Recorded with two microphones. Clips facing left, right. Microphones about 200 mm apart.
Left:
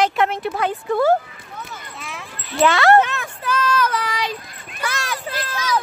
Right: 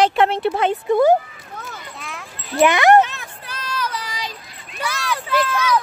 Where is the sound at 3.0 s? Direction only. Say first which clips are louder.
Left 3 dB; 50° left (ahead or behind).